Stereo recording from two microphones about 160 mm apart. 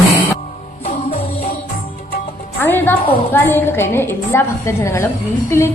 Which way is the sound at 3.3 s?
15° left (ahead or behind).